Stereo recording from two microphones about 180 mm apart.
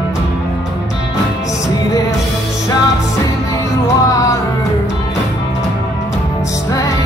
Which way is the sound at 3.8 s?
15° left (ahead or behind).